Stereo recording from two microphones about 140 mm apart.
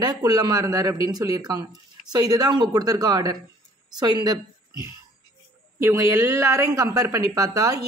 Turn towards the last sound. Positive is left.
turn(degrees=-25)  # may be behind; listen again after turning